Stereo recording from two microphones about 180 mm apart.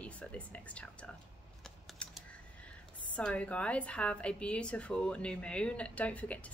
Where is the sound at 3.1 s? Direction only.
5° left (ahead or behind).